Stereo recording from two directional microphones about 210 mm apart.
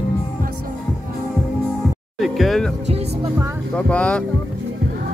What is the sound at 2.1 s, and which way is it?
Speech, centre (ahead or behind).